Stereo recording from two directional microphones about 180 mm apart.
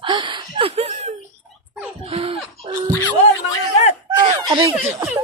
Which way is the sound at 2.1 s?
30° right (ahead or behind).